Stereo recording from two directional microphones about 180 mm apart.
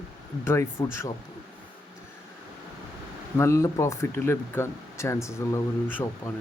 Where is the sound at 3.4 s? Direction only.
15° left (ahead or behind).